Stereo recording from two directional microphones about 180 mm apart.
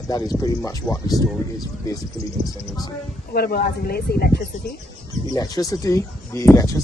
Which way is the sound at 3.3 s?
55° left (ahead or behind).